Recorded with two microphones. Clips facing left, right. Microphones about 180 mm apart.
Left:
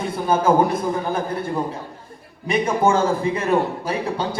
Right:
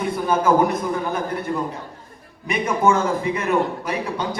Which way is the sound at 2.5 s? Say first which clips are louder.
Left 1 dB; 30° left (ahead or behind).